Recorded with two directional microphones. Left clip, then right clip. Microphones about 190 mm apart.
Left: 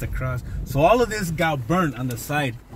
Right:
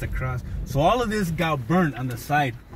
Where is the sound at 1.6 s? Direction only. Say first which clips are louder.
Left 1 dB; 55° left (ahead or behind).